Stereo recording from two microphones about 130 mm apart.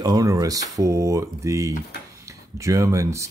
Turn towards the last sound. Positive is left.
turn(degrees=-25)  # may be behind; listen again after turning